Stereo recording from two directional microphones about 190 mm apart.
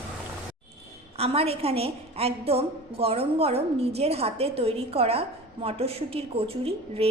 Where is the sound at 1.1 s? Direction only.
30° right (ahead or behind).